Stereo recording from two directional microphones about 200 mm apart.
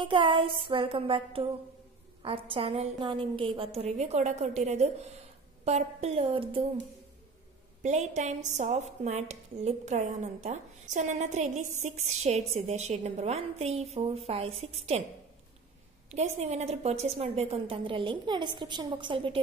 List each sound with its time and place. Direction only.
0.0 s a woman's voice: 25° right (ahead or behind)
7.8 s a woman's voice: 35° right (ahead or behind)
16.1 s a woman's voice: 35° right (ahead or behind)